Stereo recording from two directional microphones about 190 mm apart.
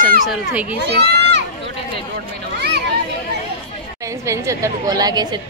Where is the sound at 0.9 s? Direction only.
60° right (ahead or behind).